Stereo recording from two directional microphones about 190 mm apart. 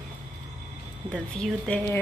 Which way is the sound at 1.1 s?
5° left (ahead or behind).